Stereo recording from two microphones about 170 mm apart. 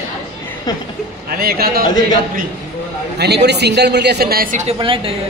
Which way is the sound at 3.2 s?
80° right.